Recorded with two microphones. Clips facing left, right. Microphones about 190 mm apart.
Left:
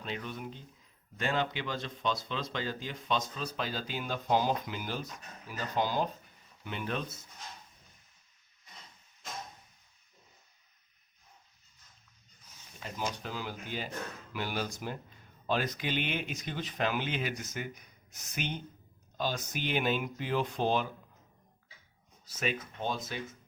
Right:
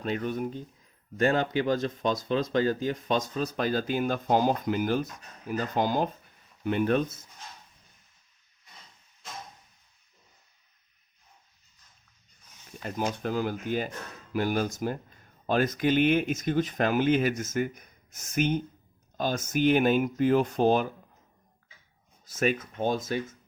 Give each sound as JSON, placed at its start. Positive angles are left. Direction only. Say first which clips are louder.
{"t": 0.0, "sound": "speech", "louder": "right 9 dB", "side_deg": -50}
{"t": 12.8, "sound": "speech", "louder": "right 7 dB", "side_deg": -55}
{"t": 22.3, "sound": "speech", "louder": "right 8 dB", "side_deg": -50}